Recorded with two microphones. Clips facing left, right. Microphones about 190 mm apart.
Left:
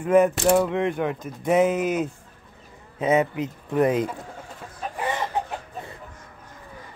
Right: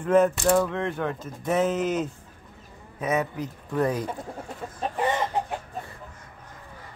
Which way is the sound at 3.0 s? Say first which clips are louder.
Left 5 dB; 25° left (ahead or behind).